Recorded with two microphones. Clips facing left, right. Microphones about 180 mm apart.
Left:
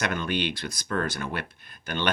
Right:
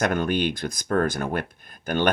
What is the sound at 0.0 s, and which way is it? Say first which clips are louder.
Speech: right 5 dB; 50° right (ahead or behind).